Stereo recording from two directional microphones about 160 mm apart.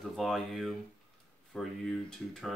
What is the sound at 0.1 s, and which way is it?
Speech, centre (ahead or behind).